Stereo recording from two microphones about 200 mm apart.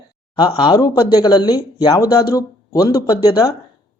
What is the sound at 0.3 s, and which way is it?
Speech, 20° left (ahead or behind).